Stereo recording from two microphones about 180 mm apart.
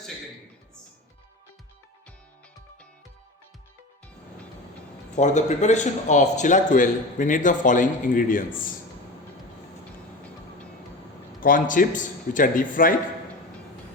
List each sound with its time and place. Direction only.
5.1 s a man's voice: 40° left (ahead or behind)
11.3 s a man's voice: 50° left (ahead or behind)